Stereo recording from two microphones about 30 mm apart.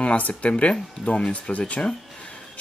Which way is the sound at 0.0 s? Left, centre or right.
Left.